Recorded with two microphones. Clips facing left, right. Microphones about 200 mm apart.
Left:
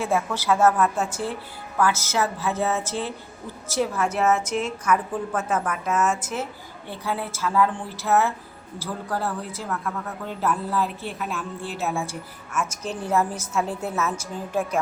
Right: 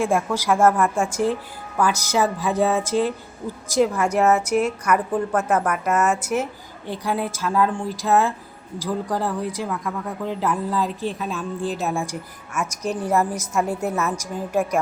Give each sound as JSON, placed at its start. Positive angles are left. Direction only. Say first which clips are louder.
{"t": 0.0, "sound": "a woman's voice", "louder": "right 3 dB", "side_deg": -10}
{"t": 5.6, "sound": "a woman's voice", "louder": "right 5 dB", "side_deg": -65}
{"t": 5.9, "sound": "a woman's voice", "louder": "right 3 dB", "side_deg": -10}